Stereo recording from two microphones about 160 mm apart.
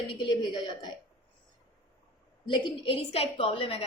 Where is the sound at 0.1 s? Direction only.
30° left (ahead or behind).